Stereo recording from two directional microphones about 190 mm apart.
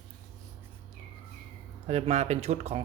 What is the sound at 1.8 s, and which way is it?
Speech, 35° right (ahead or behind).